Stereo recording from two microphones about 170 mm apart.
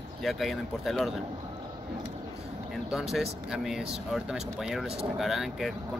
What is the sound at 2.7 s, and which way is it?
Speech, 5° right (ahead or behind).